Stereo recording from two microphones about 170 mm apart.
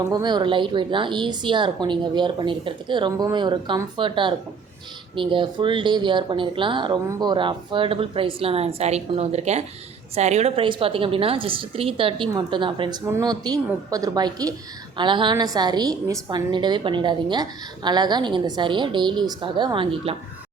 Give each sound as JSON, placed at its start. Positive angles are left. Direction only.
{"t": 0.1, "sound": "a woman's voice", "side_deg": -25}